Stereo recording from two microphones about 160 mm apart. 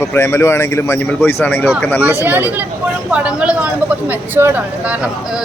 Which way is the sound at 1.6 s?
5° right (ahead or behind).